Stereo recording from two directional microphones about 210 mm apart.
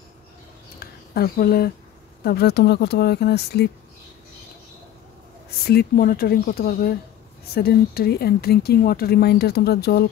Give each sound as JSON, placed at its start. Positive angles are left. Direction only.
{"t": 0.7, "sound": "a sound", "side_deg": 45}
{"t": 2.2, "sound": "speech", "side_deg": 50}
{"t": 5.7, "sound": "speech", "side_deg": 45}